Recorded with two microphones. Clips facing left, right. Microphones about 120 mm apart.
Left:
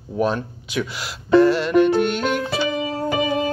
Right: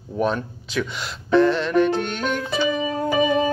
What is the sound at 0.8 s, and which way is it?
Music, 5° left (ahead or behind).